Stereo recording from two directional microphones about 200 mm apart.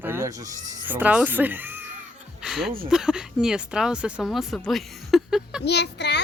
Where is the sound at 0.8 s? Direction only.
10° right (ahead or behind).